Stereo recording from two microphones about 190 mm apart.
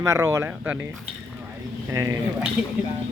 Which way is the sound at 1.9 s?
15° right (ahead or behind).